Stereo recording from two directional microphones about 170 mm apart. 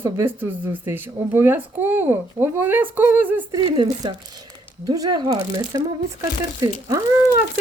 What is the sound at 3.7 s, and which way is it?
Speech, 25° right (ahead or behind).